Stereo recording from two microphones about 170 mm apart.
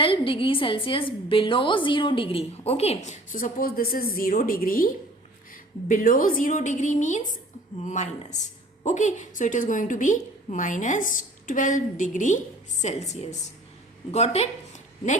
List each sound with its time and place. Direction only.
0.0 s a woman's voice: 30° left (ahead or behind)